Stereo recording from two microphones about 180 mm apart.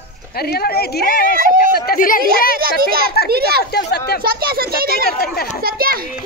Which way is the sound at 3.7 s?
65° left (ahead or behind).